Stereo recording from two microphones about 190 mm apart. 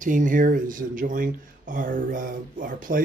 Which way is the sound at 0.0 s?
45° right (ahead or behind).